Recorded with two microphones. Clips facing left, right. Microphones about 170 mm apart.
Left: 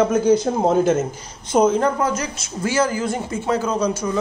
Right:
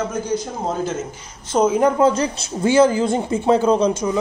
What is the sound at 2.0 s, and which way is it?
Speech, 30° right (ahead or behind).